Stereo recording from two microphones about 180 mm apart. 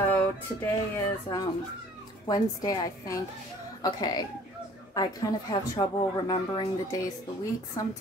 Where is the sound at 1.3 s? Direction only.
25° left (ahead or behind).